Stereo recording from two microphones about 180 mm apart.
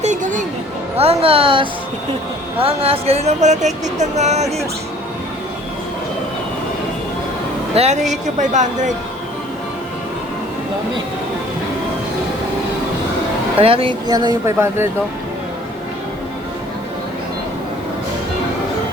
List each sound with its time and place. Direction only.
0.0 s a sound: 45° right (ahead or behind)
0.9 s speech: 30° right (ahead or behind)
7.8 s speech: 40° right (ahead or behind)
13.6 s speech: 30° right (ahead or behind)
14.4 s speech: 15° right (ahead or behind)